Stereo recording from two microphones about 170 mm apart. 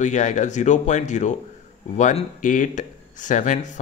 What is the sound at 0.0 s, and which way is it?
Speech, 45° left (ahead or behind).